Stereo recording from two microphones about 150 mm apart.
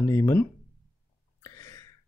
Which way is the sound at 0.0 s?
20° left (ahead or behind).